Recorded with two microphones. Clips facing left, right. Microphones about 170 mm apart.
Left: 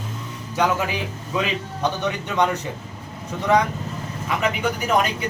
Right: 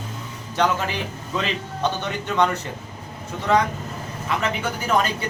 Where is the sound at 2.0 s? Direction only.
15° left (ahead or behind).